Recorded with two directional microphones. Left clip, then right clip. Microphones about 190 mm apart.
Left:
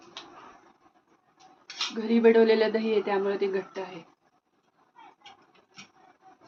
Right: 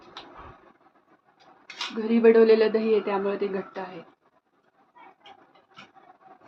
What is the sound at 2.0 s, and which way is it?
Speech, centre (ahead or behind).